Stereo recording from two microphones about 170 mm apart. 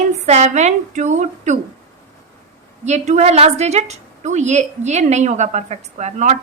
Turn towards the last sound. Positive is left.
turn(degrees=-45)  # may be behind; listen again after turning